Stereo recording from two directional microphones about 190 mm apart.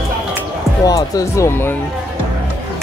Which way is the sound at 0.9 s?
20° left (ahead or behind).